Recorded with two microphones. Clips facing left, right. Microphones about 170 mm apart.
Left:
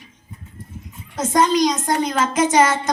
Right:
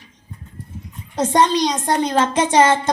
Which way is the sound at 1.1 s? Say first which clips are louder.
Right 1 dB; 30° right (ahead or behind).